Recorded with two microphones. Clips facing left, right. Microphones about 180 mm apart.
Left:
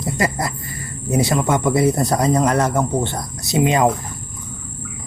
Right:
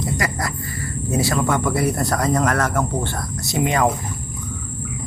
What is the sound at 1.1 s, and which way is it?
Speech, 20° left (ahead or behind).